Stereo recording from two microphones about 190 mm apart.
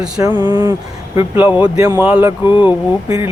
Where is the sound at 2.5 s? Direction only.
25° left (ahead or behind).